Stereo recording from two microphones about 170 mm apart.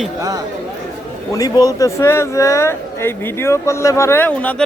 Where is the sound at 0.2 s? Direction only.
20° right (ahead or behind).